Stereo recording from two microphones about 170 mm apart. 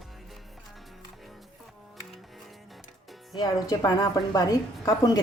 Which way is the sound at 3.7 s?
20° left (ahead or behind).